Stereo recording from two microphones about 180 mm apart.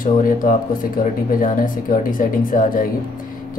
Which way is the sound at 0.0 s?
50° left (ahead or behind).